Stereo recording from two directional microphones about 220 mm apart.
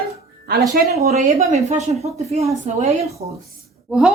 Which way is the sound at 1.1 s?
30° right (ahead or behind).